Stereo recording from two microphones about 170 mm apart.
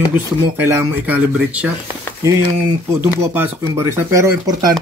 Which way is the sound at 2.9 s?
15° right (ahead or behind).